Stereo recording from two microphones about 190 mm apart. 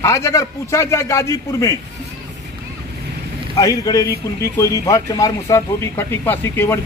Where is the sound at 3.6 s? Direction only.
20° left (ahead or behind).